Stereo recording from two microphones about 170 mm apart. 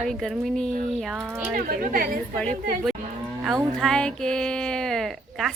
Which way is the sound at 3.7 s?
5° left (ahead or behind).